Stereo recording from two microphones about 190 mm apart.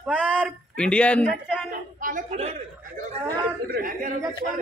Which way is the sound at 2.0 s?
40° right (ahead or behind).